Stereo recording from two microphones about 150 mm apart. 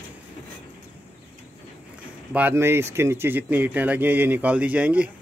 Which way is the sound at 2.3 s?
15° right (ahead or behind).